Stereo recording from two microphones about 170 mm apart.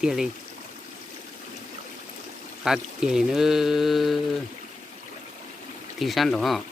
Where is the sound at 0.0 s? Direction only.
5° right (ahead or behind).